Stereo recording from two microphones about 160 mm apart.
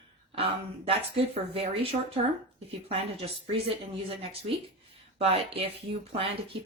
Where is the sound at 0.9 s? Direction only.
35° right (ahead or behind).